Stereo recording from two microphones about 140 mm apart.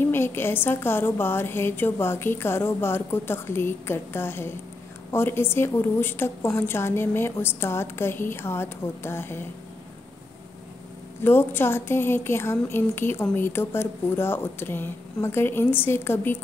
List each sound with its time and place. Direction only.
0.0 s a woman's voice: 15° left (ahead or behind)
11.2 s a woman's voice: 15° left (ahead or behind)